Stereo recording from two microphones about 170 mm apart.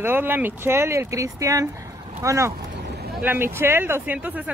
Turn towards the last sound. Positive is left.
turn(degrees=-10)  # may be behind; listen again after turning